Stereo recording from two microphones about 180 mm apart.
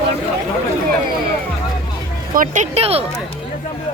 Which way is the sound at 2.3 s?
45° right (ahead or behind).